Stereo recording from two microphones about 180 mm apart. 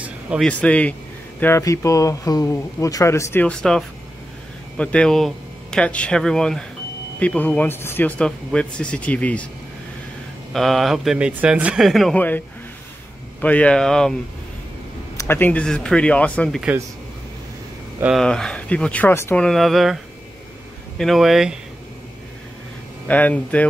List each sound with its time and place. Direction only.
0.0 s a sound: 5° right (ahead or behind)
0.5 s speech: 5° left (ahead or behind)
10.5 s speech: centre (ahead or behind)
15.1 s speech: 10° left (ahead or behind)
18.0 s speech: centre (ahead or behind)
21.0 s speech: centre (ahead or behind)
23.0 s speech: 10° left (ahead or behind)